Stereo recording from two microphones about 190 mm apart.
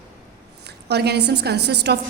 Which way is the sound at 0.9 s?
60° right (ahead or behind).